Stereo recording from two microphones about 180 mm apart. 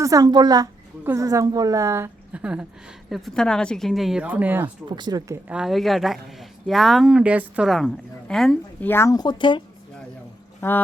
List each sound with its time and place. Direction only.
0.0 s a woman's voice: 20° right (ahead or behind)
4.6 s a woman's voice: 25° right (ahead or behind)
5.5 s speech: 5° right (ahead or behind); by 9.6 s 25° left (ahead or behind)
10.6 s speech: 10° left (ahead or behind)